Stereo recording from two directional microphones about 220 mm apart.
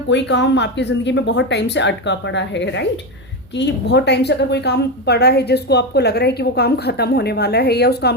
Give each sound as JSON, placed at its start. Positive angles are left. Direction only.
{"t": 0.1, "sound": "a woman's voice", "side_deg": 55}